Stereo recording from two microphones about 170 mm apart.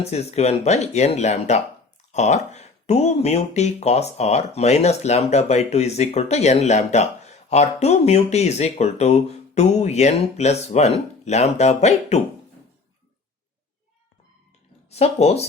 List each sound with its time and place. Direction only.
0.0 s speech: 40° left (ahead or behind)
14.8 s speech: 40° left (ahead or behind)